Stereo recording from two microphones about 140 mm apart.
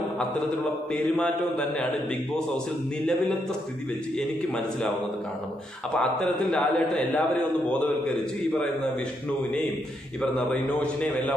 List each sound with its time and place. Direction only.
1.0 s a man's voice: centre (ahead or behind)
5.9 s a man's voice: 5° left (ahead or behind)
10.2 s a man's voice: 5° left (ahead or behind)